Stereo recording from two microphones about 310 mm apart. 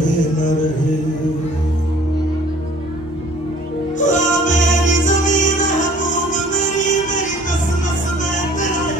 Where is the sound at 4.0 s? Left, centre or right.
Left.